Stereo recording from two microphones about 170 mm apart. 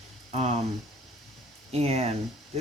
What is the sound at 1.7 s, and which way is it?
Speech, 40° right (ahead or behind).